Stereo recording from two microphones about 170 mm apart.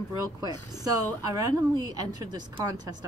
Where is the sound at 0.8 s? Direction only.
20° right (ahead or behind).